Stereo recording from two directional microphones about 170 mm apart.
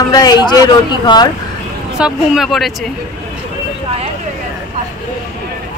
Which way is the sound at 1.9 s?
5° right (ahead or behind).